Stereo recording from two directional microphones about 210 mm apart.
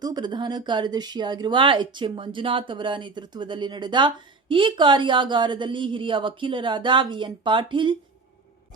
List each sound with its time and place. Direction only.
0.0 s speech: 20° right (ahead or behind)